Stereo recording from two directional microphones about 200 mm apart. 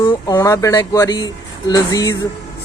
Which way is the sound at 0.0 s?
15° left (ahead or behind).